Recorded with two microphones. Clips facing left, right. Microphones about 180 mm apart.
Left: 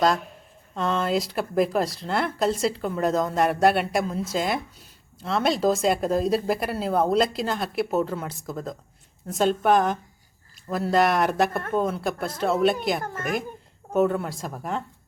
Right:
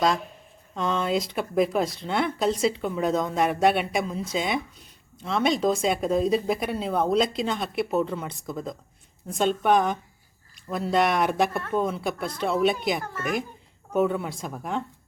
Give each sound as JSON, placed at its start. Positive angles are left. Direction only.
{"t": 0.8, "sound": "speech", "side_deg": 0}
{"t": 13.0, "sound": "speech", "side_deg": 50}
{"t": 13.9, "sound": "speech", "side_deg": 0}